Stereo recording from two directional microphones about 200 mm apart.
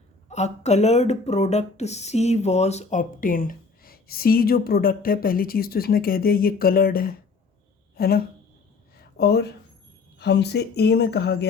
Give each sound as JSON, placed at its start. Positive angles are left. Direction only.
{"t": 0.3, "sound": "speech", "side_deg": 35}